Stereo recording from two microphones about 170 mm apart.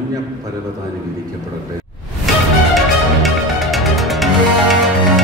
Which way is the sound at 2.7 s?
Centre (ahead or behind).